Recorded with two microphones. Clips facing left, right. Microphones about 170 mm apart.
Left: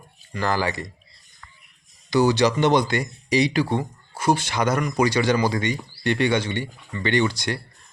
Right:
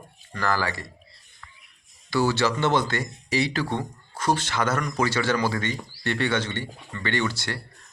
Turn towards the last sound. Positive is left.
turn(degrees=15)  # may be behind; listen again after turning